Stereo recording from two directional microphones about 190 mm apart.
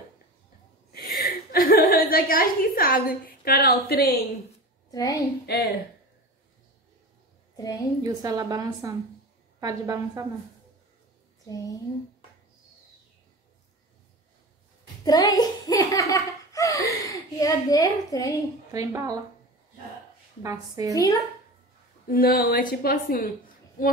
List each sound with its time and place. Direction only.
0.9 s chuckle: 50° left (ahead or behind)
4.9 s a woman's voice: 20° left (ahead or behind)
5.5 s a woman's voice: 55° left (ahead or behind)
7.5 s a woman's voice: 20° left (ahead or behind)
8.0 s a woman's voice: 20° right (ahead or behind)
15.0 s a child's voice: 20° left (ahead or behind)
18.7 s a woman's voice: 15° right (ahead or behind)
20.4 s a woman's voice: 20° right (ahead or behind)
20.9 s speech: 15° left (ahead or behind)
22.0 s a woman's voice: 50° left (ahead or behind)